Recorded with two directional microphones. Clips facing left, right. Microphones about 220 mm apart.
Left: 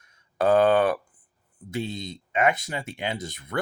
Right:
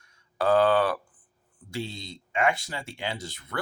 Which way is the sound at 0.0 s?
20° left (ahead or behind).